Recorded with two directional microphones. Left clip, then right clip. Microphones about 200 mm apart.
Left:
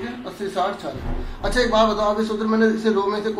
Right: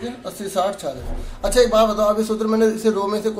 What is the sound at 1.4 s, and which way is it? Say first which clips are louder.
A man's voice: right 3 dB; 35° right (ahead or behind).